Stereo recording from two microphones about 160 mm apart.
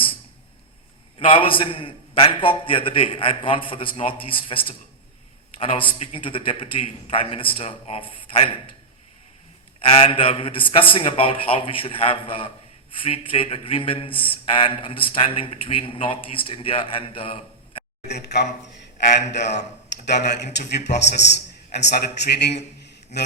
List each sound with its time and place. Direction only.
1.2 s a man's voice: 35° left (ahead or behind)
9.8 s a man's voice: 35° left (ahead or behind)
18.1 s speech: 90° left
19.5 s speech: 90° left
23.1 s a sound: 45° left (ahead or behind)